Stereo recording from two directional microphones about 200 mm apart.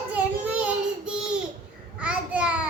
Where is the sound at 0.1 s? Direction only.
5° right (ahead or behind).